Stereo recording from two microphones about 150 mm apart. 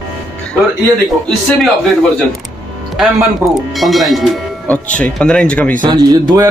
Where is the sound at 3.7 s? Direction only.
Centre (ahead or behind).